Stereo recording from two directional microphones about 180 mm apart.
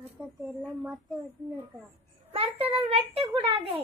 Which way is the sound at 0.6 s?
Centre (ahead or behind).